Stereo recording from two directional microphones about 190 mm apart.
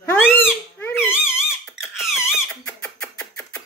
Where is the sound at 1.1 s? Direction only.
Centre (ahead or behind).